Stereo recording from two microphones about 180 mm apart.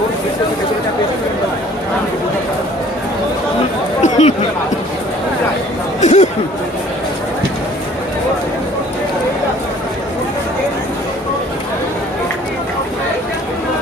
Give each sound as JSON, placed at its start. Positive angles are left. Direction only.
{"t": 4.0, "sound": "chatter", "side_deg": 40}
{"t": 6.0, "sound": "chatter", "side_deg": 40}